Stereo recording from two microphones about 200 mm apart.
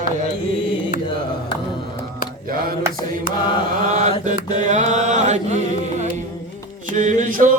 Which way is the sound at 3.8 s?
40° right (ahead or behind).